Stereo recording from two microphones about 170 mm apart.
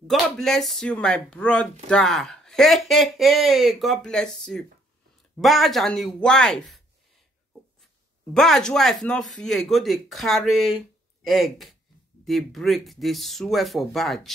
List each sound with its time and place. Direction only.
0.0 s speech: centre (ahead or behind)
8.3 s speech: 5° left (ahead or behind)